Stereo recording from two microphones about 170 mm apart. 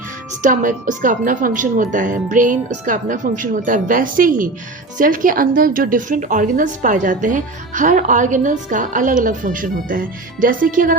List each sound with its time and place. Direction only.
0.4 s a woman's voice: 50° right (ahead or behind)